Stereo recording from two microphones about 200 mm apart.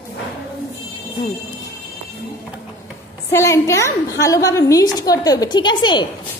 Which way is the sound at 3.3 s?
15° left (ahead or behind).